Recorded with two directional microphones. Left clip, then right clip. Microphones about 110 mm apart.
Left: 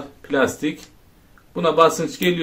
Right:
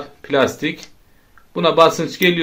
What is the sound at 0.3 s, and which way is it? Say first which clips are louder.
A man's voice: right 3 dB; 25° right (ahead or behind).